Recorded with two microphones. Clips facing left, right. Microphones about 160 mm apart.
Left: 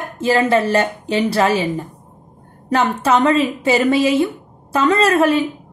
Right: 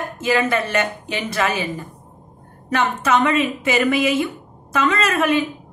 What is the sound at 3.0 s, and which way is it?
A woman's voice, 30° left (ahead or behind).